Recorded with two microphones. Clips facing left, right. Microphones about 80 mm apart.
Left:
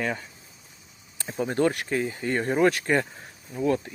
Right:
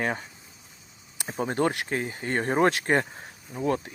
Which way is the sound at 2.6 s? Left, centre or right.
Right.